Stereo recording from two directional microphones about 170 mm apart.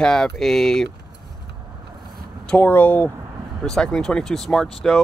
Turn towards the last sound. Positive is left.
turn(degrees=0)  # may be behind; listen again after turning